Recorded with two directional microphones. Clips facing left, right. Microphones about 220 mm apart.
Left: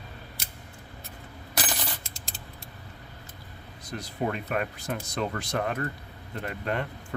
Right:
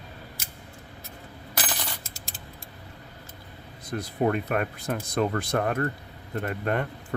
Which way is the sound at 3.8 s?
55° right (ahead or behind).